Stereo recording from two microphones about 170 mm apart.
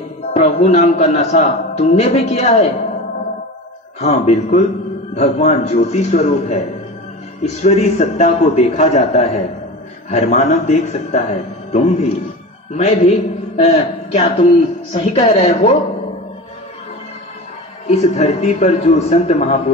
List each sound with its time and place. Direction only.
0.3 s a man's voice: 40° left (ahead or behind)
4.0 s a man's voice: 40° left (ahead or behind)
17.8 s a man's voice: 40° left (ahead or behind)